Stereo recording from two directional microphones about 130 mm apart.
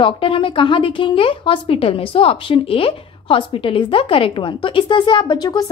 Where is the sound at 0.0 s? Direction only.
40° left (ahead or behind).